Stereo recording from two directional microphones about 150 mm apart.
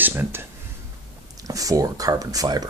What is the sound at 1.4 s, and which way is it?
Speech, 25° right (ahead or behind).